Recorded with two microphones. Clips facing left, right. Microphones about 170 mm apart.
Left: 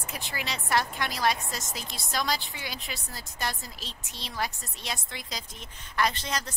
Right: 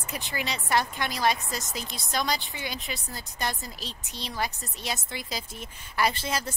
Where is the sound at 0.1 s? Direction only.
Centre (ahead or behind).